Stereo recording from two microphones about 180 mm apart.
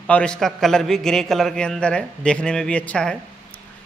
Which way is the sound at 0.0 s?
5° left (ahead or behind).